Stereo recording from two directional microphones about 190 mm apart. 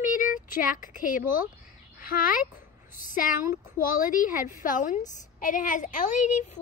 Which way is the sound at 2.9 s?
45° left (ahead or behind).